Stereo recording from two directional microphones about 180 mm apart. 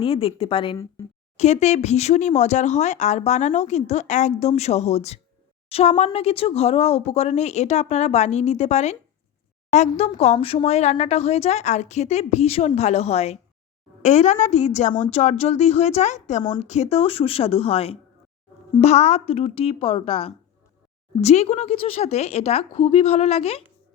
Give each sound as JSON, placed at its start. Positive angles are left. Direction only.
{"t": 0.0, "sound": "a woman's voice", "side_deg": 30}